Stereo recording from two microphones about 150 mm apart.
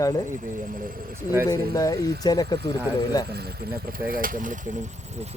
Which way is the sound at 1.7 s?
25° left (ahead or behind).